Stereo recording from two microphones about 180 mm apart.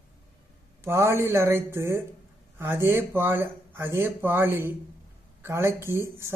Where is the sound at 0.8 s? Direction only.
15° right (ahead or behind).